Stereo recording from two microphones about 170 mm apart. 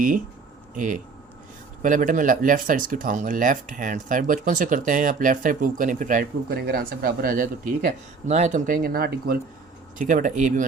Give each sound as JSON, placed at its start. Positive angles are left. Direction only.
{"t": 0.8, "sound": "speech", "side_deg": -50}
{"t": 10.0, "sound": "speech", "side_deg": -50}